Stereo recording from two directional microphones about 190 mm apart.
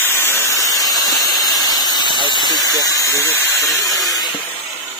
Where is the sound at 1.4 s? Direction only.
20° left (ahead or behind).